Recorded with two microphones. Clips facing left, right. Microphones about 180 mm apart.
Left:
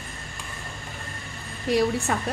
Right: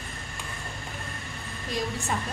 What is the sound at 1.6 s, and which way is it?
Speech, 70° left (ahead or behind).